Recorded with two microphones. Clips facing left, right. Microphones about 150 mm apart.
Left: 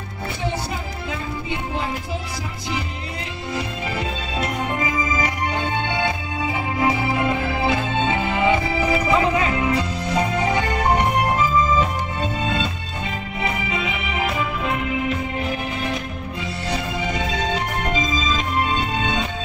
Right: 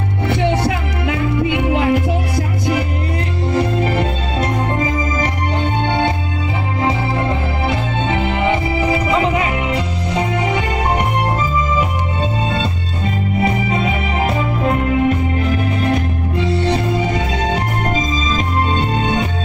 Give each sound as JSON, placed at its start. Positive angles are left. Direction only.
{"t": 0.3, "sound": "music", "side_deg": -75}
{"t": 3.5, "sound": "music", "side_deg": -55}
{"t": 4.7, "sound": "organ", "side_deg": -40}
{"t": 6.8, "sound": "music", "side_deg": -30}
{"t": 13.5, "sound": "music", "side_deg": -45}
{"t": 16.3, "sound": "music", "side_deg": -30}
{"t": 16.7, "sound": "organ", "side_deg": -50}
{"t": 18.8, "sound": "music", "side_deg": -50}